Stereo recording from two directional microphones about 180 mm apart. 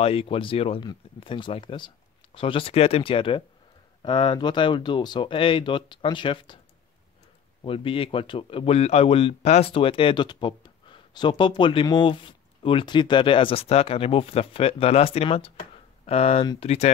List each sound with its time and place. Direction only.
0.0 s speech: 30° left (ahead or behind)
7.6 s speech: 30° left (ahead or behind)